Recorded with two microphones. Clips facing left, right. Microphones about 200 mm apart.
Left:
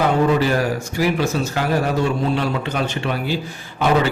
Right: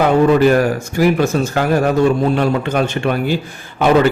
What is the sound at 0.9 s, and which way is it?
A man's voice, 50° right (ahead or behind).